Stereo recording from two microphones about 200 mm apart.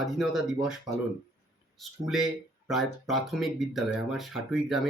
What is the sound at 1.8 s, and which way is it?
Speech, centre (ahead or behind).